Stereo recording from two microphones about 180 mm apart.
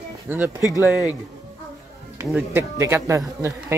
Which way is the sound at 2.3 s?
10° right (ahead or behind).